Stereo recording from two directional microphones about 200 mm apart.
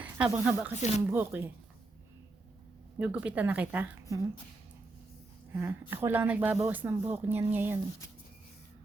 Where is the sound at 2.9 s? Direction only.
5° right (ahead or behind).